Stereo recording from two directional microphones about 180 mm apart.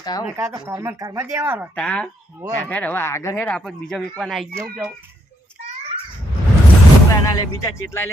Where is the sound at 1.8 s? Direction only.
5° left (ahead or behind).